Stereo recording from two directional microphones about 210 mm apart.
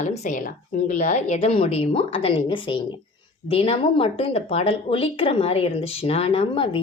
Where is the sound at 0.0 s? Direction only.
35° left (ahead or behind).